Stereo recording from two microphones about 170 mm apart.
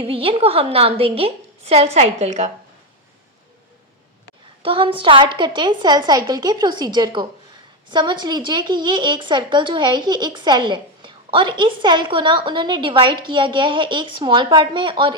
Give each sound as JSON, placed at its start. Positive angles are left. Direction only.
{"t": 0.0, "sound": "a woman's voice", "side_deg": -35}
{"t": 4.6, "sound": "a woman's voice", "side_deg": -30}